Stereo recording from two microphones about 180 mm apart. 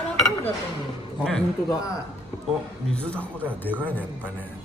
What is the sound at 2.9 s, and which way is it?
Speech, 5° left (ahead or behind).